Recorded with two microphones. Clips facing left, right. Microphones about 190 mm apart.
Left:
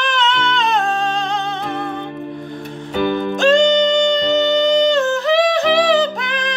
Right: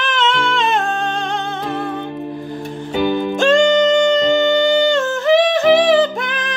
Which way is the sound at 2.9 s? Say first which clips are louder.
Right 1 dB; 10° right (ahead or behind).